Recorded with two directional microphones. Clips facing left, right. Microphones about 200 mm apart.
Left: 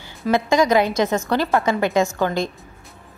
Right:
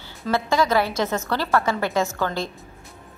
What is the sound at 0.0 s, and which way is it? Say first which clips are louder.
A woman's voice: left 4 dB; 15° left (ahead or behind).